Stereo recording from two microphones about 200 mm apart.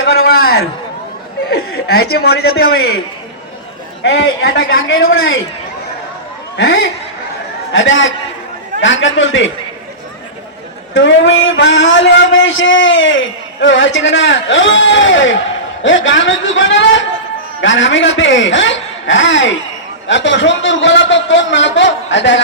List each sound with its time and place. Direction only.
0.0 s a sound: 80° left
0.3 s a sound: 50° left (ahead or behind)
1.5 s a man's voice: 50° left (ahead or behind)
4.0 s a man's voice: 60° left (ahead or behind); by 5.4 s 85° left
7.7 s a man's voice: 70° left (ahead or behind)
10.9 s a man's voice: 70° left (ahead or behind)